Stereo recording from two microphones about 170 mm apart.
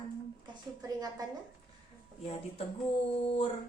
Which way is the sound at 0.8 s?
20° right (ahead or behind).